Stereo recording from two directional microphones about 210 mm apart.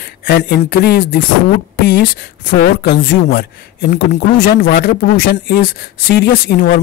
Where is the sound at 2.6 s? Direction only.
55° left (ahead or behind).